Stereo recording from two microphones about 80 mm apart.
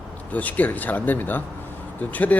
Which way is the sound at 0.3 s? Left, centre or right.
Centre.